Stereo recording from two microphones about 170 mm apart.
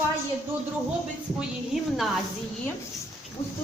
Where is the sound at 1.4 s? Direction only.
Centre (ahead or behind).